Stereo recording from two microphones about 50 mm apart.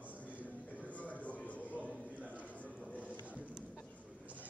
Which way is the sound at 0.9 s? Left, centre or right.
Left.